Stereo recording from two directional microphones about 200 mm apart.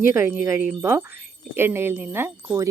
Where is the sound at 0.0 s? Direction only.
10° right (ahead or behind).